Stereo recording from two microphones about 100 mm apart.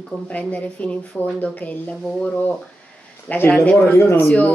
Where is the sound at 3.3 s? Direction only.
20° left (ahead or behind).